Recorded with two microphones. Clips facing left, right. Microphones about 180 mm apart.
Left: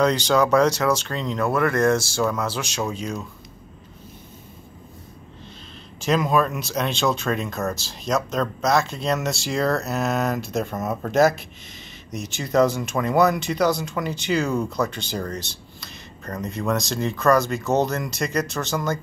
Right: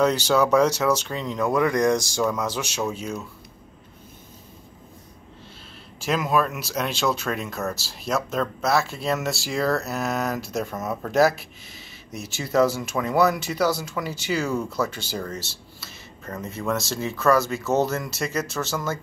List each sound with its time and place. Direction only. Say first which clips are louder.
0.0 s speech: left 1 dB; 5° right (ahead or behind)
6.0 s speech: left 2 dB; 5° right (ahead or behind)